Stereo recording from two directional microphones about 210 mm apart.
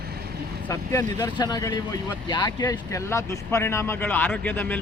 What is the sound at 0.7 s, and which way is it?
Speech, 15° left (ahead or behind).